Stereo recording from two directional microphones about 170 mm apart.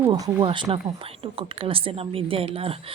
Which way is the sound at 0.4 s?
30° right (ahead or behind).